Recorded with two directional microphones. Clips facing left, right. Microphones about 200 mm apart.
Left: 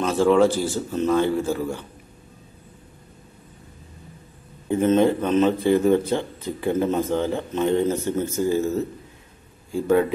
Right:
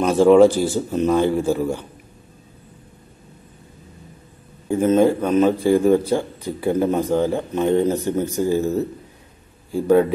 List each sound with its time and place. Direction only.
0.0 s a man's voice: 15° right (ahead or behind)
4.6 s a man's voice: 10° right (ahead or behind)